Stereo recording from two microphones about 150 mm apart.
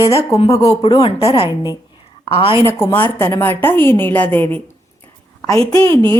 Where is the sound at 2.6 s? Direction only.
15° left (ahead or behind).